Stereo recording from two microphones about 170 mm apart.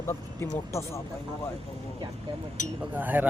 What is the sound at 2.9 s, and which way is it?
Speech, 10° right (ahead or behind).